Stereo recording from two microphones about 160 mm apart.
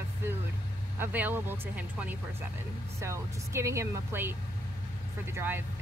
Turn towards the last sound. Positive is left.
turn(degrees=-15)  # may be behind; listen again after turning